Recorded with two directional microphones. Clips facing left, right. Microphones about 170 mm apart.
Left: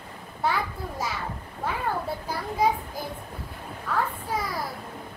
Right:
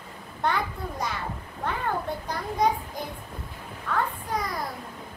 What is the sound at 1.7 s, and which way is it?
Children playing, 5° left (ahead or behind).